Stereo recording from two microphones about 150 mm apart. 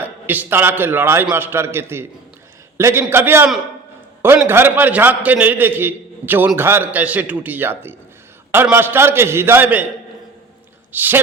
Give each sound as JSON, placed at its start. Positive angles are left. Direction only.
{"t": 0.0, "sound": "a man's voice", "side_deg": -10}
{"t": 10.9, "sound": "a man's voice", "side_deg": -15}